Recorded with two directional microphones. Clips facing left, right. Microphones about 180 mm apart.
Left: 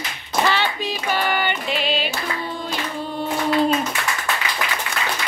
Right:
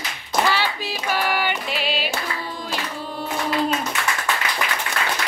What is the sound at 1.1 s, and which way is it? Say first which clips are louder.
Music: even; 5° right (ahead or behind).